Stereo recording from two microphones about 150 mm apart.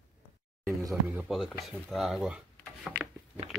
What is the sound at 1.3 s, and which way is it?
Speech, centre (ahead or behind).